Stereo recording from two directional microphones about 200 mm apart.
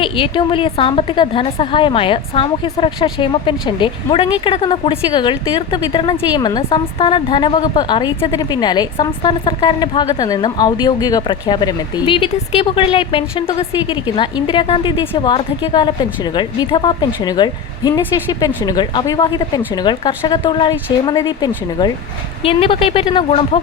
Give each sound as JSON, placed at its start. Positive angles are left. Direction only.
{"t": 0.0, "sound": "a woman's voice", "side_deg": 25}